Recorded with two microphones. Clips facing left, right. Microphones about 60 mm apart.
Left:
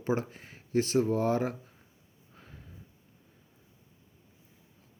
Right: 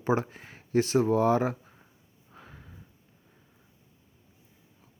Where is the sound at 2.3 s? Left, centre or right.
Right.